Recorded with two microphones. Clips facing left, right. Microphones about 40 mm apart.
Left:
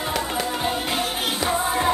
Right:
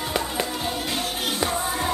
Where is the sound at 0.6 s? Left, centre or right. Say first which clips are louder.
Left 3 dB; centre.